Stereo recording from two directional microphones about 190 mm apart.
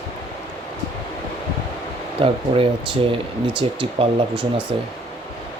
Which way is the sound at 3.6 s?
25° right (ahead or behind).